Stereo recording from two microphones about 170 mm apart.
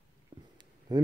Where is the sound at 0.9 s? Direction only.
25° right (ahead or behind).